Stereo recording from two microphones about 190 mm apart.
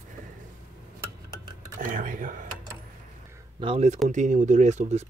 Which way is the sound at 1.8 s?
45° right (ahead or behind).